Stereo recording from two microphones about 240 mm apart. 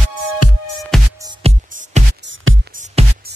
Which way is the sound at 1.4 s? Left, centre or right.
Right.